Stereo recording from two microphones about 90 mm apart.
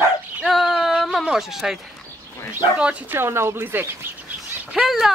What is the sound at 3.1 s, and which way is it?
Speech, 30° right (ahead or behind).